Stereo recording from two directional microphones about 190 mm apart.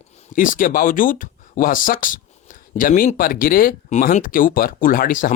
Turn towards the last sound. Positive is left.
turn(degrees=45)  # may be behind; listen again after turning